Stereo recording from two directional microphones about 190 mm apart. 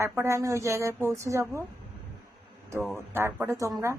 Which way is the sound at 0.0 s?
15° right (ahead or behind).